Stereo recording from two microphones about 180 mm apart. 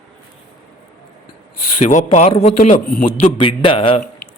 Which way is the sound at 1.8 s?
45° left (ahead or behind).